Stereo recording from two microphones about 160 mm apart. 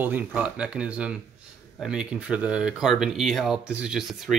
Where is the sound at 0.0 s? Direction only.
10° right (ahead or behind).